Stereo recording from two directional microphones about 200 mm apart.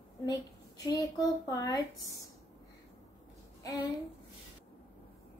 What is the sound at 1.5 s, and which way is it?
Speech, 20° left (ahead or behind).